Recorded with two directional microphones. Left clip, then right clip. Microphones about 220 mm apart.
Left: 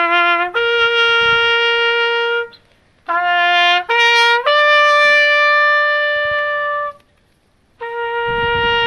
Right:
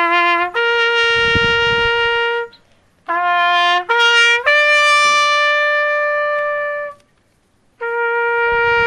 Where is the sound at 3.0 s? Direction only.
5° left (ahead or behind).